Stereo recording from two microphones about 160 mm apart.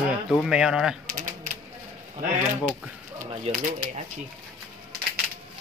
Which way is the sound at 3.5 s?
40° right (ahead or behind).